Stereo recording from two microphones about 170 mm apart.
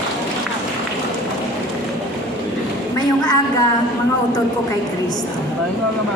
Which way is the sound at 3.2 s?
20° left (ahead or behind).